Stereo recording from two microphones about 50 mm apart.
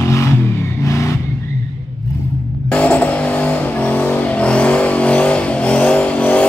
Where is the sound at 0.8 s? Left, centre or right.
Left.